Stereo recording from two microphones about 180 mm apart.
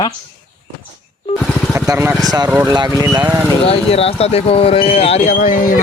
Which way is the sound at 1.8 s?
10° right (ahead or behind).